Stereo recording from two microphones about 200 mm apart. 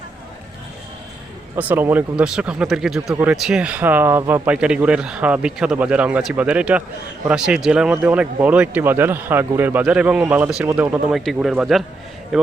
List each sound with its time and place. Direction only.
1.5 s a man's voice: 10° right (ahead or behind)